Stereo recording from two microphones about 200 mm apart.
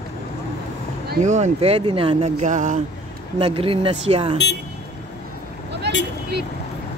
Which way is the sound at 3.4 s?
25° right (ahead or behind).